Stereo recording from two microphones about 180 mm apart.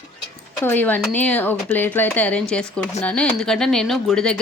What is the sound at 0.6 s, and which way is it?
Speech, 10° left (ahead or behind).